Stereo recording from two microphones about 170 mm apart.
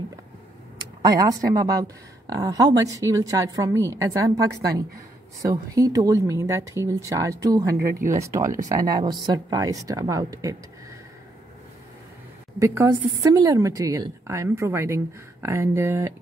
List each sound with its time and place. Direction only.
0.7 s speech: 20° right (ahead or behind)
12.5 s speech: 20° right (ahead or behind)